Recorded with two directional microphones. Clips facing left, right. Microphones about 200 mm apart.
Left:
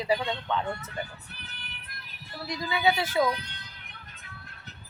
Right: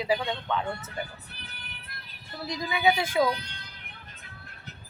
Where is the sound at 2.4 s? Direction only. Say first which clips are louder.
Right 1 dB; 20° right (ahead or behind).